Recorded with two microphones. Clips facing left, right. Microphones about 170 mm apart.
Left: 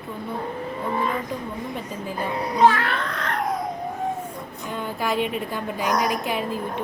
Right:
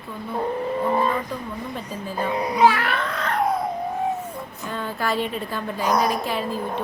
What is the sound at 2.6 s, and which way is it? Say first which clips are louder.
Speech: left 1 dB; 10° right (ahead or behind).